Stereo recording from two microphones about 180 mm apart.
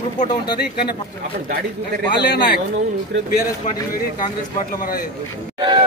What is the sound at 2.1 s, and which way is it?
Speech, 65° left (ahead or behind).